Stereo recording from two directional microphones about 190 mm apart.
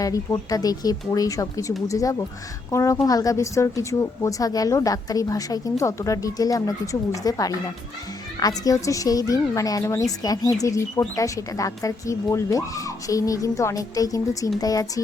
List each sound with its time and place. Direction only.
0.0 s a woman's voice: 20° left (ahead or behind)